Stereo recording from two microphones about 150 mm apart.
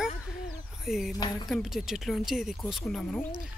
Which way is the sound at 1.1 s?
25° left (ahead or behind).